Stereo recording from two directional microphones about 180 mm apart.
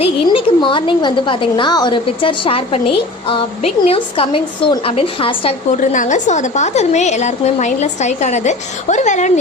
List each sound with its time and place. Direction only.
0.0 s a woman's voice: 30° left (ahead or behind)
5.7 s a woman's voice: 45° left (ahead or behind)